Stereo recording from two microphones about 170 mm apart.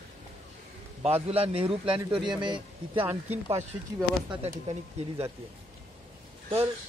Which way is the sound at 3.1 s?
35° right (ahead or behind).